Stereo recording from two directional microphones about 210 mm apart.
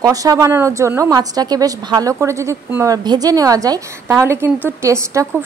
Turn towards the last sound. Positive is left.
turn(degrees=-15)  # may be behind; listen again after turning